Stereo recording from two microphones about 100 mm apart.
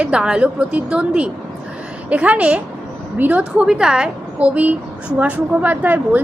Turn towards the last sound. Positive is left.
turn(degrees=-15)  # may be behind; listen again after turning